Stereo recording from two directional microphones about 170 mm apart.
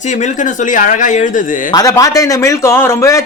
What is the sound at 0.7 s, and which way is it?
Speech, 50° left (ahead or behind).